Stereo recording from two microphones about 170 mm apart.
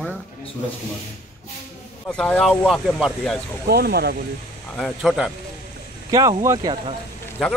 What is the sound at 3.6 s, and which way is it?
Speech, 65° right (ahead or behind).